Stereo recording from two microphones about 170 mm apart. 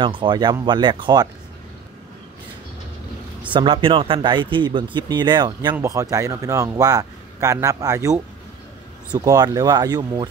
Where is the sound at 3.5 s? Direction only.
30° right (ahead or behind).